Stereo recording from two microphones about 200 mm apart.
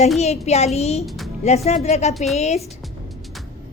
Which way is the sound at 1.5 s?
30° left (ahead or behind).